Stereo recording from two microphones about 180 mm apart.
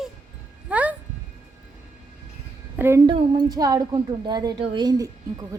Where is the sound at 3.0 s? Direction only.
25° right (ahead or behind).